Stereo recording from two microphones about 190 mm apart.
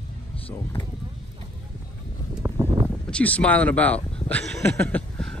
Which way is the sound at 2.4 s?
15° right (ahead or behind).